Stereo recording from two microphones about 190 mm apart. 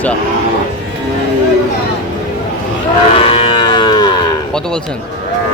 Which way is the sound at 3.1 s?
30° left (ahead or behind).